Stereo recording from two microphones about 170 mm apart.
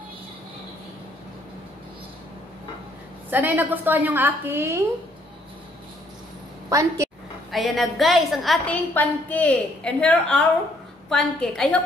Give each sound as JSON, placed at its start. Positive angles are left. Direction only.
{"t": 3.3, "sound": "a woman's voice", "side_deg": -10}
{"t": 6.7, "sound": "a woman's voice", "side_deg": -20}
{"t": 7.5, "sound": "a woman's voice", "side_deg": 0}